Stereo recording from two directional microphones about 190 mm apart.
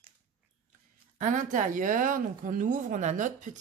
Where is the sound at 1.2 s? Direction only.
40° right (ahead or behind).